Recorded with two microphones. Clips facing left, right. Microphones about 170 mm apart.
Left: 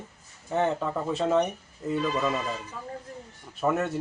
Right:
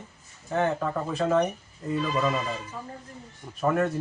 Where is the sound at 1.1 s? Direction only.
25° left (ahead or behind).